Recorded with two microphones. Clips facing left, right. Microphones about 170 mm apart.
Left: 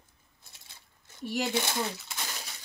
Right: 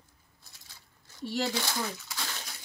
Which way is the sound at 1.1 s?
15° left (ahead or behind).